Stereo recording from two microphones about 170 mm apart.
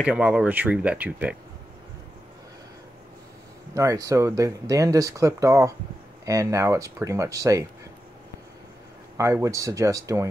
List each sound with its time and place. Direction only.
0.0 s speech: 5° right (ahead or behind)
3.7 s speech: 20° right (ahead or behind)
9.1 s speech: 15° right (ahead or behind)